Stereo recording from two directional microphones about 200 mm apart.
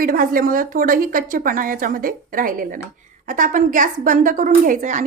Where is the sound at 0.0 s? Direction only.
45° right (ahead or behind).